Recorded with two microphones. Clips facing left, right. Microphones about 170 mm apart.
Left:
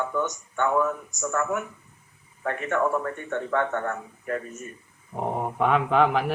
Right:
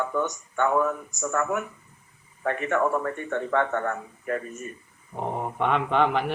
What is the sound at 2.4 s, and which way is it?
Speech, 40° right (ahead or behind).